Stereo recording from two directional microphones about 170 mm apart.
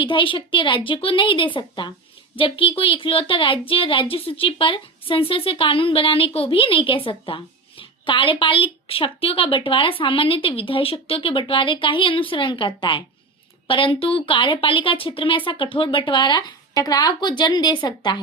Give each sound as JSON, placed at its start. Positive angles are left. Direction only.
{"t": 0.0, "sound": "a woman's voice", "side_deg": 30}